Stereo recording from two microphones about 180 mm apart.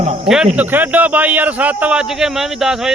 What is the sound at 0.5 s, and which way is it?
Speech, 10° right (ahead or behind).